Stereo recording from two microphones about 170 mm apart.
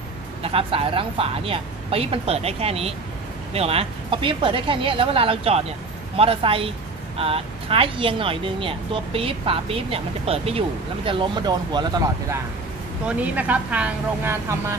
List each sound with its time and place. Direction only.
0.4 s speech: 35° right (ahead or behind)
13.0 s speech: 10° right (ahead or behind)